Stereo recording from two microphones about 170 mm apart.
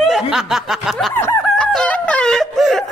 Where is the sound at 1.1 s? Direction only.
15° left (ahead or behind).